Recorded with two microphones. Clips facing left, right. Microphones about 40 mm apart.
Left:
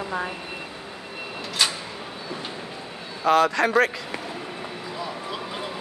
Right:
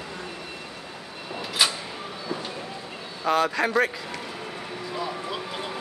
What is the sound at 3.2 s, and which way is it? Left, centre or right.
Speech, centre.